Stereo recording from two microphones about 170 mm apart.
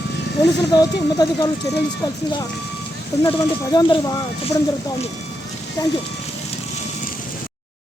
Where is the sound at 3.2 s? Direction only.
20° left (ahead or behind).